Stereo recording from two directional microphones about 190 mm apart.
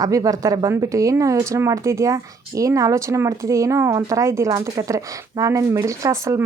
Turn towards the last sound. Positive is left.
turn(degrees=-15)  # may be behind; listen again after turning